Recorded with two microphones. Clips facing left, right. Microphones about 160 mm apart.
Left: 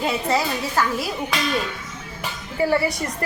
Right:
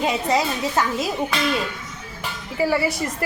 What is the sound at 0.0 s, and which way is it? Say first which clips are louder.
A woman's voice: right 1 dB; 15° right (ahead or behind).